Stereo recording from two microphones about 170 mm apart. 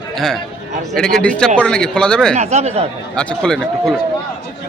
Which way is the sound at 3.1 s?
5° left (ahead or behind).